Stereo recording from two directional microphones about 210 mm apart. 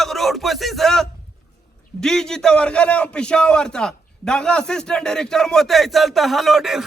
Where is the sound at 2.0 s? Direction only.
5° left (ahead or behind).